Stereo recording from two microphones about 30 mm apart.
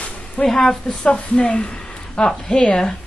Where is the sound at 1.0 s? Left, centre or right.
Left.